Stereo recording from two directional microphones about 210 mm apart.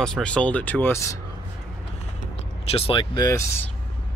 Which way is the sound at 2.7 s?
25° left (ahead or behind).